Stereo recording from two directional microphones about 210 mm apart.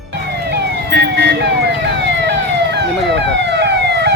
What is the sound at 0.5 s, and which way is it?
Emergency vehicle, 50° right (ahead or behind).